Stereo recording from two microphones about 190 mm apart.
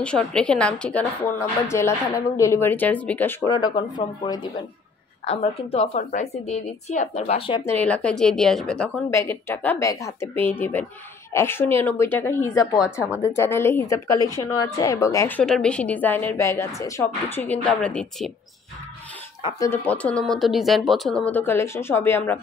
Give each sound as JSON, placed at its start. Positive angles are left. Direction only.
{"t": 0.0, "sound": "a woman's voice", "side_deg": 5}
{"t": 3.5, "sound": "a woman's voice", "side_deg": 20}
{"t": 7.6, "sound": "a woman's voice", "side_deg": 10}
{"t": 19.4, "sound": "a woman's voice", "side_deg": 15}